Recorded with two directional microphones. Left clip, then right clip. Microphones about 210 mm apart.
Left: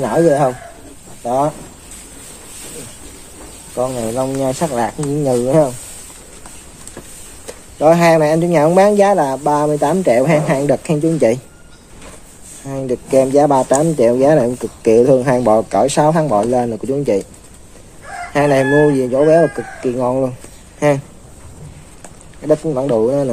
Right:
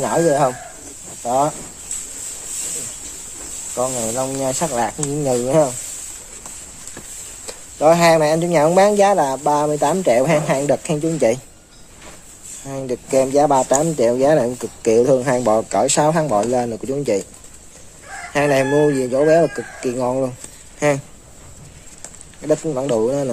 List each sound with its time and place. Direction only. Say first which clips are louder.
0.0 s speech: left 3 dB; 10° right (ahead or behind)
3.7 s speech: left 3 dB; 5° right (ahead or behind)
7.4 s speech: left 2 dB; 5° right (ahead or behind)
12.6 s speech: left 4 dB; centre (ahead or behind)
18.3 s speech: left 3 dB; centre (ahead or behind)
22.4 s speech: left 4 dB; 5° right (ahead or behind)